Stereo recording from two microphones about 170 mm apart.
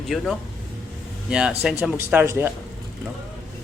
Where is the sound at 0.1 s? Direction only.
Centre (ahead or behind).